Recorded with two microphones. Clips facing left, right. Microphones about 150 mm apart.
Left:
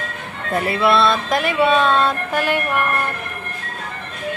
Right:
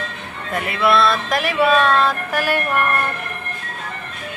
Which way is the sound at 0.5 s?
35° left (ahead or behind).